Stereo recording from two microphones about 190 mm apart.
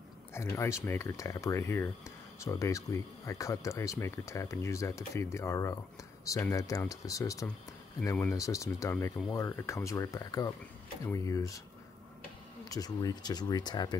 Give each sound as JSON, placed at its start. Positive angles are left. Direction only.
{"t": 0.3, "sound": "speech", "side_deg": 15}
{"t": 12.6, "sound": "speech", "side_deg": 20}